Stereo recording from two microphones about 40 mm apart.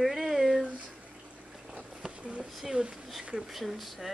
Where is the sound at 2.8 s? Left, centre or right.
Right.